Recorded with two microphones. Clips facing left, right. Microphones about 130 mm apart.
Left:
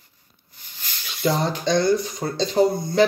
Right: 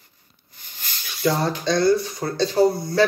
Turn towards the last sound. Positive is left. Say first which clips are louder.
# even
turn(degrees=20)  # may be behind; listen again after turning